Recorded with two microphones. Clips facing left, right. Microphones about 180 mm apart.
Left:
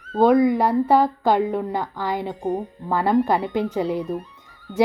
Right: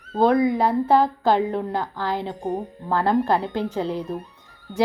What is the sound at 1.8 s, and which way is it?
Speech, 15° left (ahead or behind).